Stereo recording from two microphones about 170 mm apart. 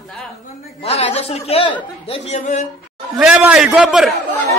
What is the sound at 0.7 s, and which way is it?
A woman's voice, 35° left (ahead or behind).